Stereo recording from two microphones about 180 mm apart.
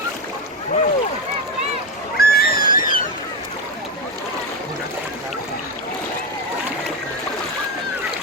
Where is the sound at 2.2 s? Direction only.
55° left (ahead or behind).